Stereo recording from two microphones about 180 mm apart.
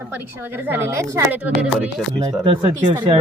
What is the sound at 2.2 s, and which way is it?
Speech, 25° right (ahead or behind).